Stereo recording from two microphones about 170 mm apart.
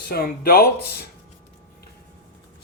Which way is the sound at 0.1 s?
65° left (ahead or behind).